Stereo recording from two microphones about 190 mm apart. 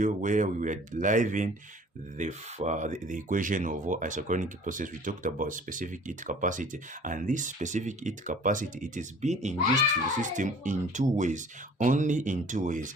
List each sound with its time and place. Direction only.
0.0 s speech: 40° right (ahead or behind)